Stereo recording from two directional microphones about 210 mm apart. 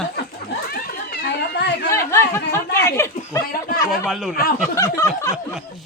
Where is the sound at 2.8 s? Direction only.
15° left (ahead or behind).